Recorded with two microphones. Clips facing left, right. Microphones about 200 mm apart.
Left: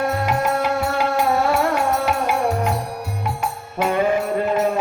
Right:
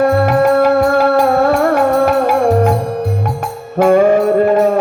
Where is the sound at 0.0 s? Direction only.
60° right (ahead or behind).